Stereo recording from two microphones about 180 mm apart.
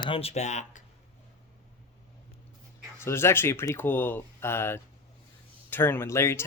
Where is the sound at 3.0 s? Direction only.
15° left (ahead or behind).